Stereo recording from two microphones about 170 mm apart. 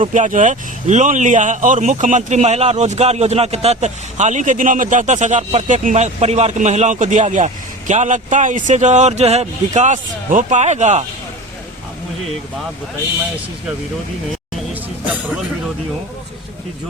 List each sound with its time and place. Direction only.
0.0 s speech: 45° right (ahead or behind)